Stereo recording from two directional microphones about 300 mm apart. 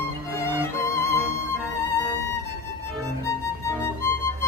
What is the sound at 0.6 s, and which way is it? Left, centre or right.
Music, centre.